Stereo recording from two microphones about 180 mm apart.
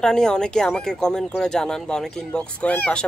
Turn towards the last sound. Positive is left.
turn(degrees=5)  # may be behind; listen again after turning